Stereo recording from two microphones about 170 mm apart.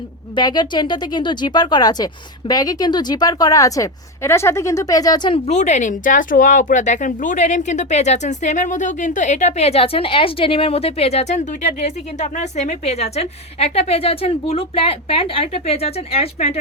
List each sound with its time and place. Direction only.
0.3 s a woman's voice: 25° left (ahead or behind)
5.5 s speech: 45° left (ahead or behind)